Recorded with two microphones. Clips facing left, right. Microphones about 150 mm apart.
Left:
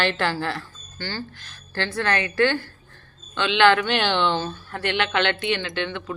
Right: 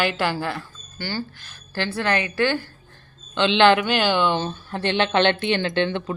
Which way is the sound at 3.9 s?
5° right (ahead or behind).